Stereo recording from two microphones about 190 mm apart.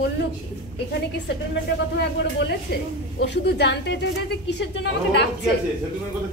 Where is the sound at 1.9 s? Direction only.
60° left (ahead or behind).